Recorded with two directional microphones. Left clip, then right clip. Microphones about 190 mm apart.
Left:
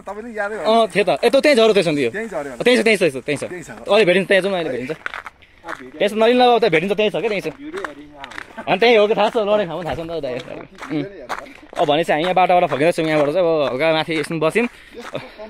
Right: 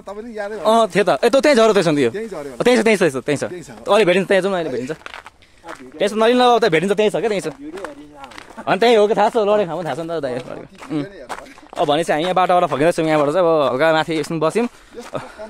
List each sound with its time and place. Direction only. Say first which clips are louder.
0.1 s speech: left 2 dB; 10° right (ahead or behind)
0.7 s speech: right 1 dB; 40° right (ahead or behind)
2.1 s speech: left 2 dB; 5° right (ahead or behind)
2.6 s speech: right 1 dB; 30° right (ahead or behind)
4.1 s speech: even; 20° right (ahead or behind)
5.9 s speech: even; 15° right (ahead or behind); by 7.5 s 35° right (ahead or behind)
8.6 s speech: even; 35° right (ahead or behind)
10.8 s speech: even; 15° left (ahead or behind)
11.8 s speech: even; 10° right (ahead or behind)